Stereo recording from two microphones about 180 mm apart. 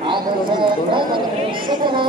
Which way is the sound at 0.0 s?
25° right (ahead or behind).